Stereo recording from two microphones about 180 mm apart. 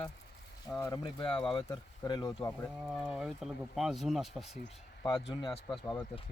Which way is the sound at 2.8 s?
Centre (ahead or behind).